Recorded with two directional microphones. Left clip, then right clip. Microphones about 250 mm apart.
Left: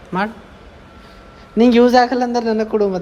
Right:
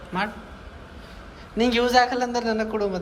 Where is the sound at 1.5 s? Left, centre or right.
Left.